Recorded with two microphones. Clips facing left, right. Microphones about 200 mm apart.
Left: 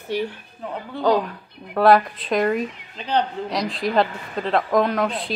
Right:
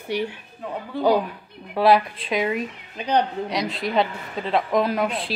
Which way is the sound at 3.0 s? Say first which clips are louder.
Right 1 dB; 15° right (ahead or behind).